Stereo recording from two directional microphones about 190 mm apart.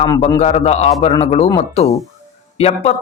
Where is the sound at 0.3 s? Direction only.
35° left (ahead or behind).